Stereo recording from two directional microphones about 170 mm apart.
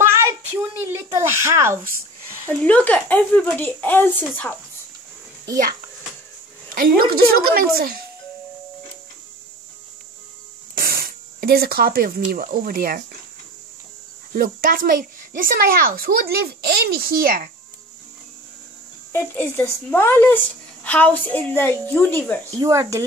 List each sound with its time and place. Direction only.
0.0 s a sound: 15° right (ahead or behind)
2.4 s speech: 10° left (ahead or behind)
6.7 s a child's voice: 60° right (ahead or behind)
10.7 s a sound: 60° right (ahead or behind)
12.3 s a child's voice: 60° right (ahead or behind)
14.3 s a child's voice: 55° right (ahead or behind)
19.1 s speech: 10° left (ahead or behind)
22.6 s speech: 20° right (ahead or behind)